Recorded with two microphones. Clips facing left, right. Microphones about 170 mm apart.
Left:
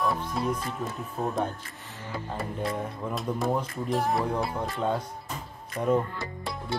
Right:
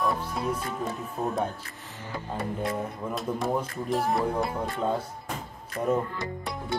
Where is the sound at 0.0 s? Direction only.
Centre (ahead or behind).